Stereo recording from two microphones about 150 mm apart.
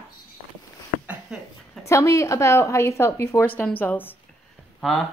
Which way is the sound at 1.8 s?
20° left (ahead or behind).